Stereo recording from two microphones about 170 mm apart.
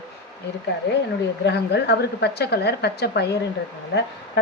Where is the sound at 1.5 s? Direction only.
75° left (ahead or behind).